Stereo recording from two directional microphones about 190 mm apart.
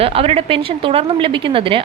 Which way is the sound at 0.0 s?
30° right (ahead or behind).